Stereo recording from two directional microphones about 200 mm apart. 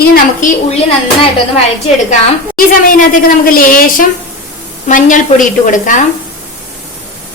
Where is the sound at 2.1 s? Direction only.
45° left (ahead or behind).